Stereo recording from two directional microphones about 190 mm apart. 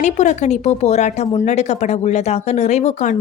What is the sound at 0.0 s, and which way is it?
A woman's voice, 40° left (ahead or behind).